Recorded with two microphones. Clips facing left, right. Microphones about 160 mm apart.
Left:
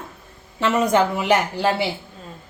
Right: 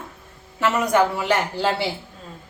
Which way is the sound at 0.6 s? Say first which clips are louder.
Left 1 dB; 25° left (ahead or behind).